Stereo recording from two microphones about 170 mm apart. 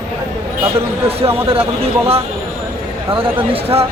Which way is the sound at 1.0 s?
35° right (ahead or behind).